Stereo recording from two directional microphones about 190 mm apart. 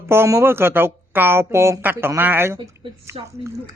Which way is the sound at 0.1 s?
15° right (ahead or behind).